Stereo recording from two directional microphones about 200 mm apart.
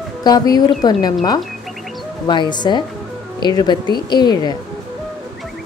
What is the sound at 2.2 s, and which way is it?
A woman's voice, 20° left (ahead or behind).